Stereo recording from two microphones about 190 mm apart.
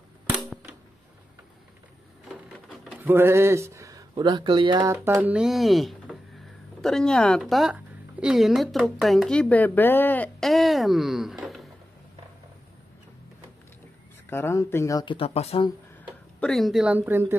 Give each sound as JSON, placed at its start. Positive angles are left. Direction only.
{"t": 2.2, "sound": "printer", "side_deg": 0}
{"t": 3.0, "sound": "speech", "side_deg": -10}
{"t": 4.9, "sound": "a woman's voice", "side_deg": -10}
{"t": 14.3, "sound": "speech", "side_deg": 15}
{"t": 16.3, "sound": "speech", "side_deg": 5}